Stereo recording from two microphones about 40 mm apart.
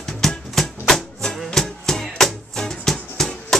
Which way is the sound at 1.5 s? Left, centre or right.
Centre.